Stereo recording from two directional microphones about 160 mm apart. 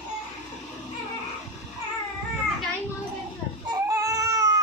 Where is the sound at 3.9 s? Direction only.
20° right (ahead or behind).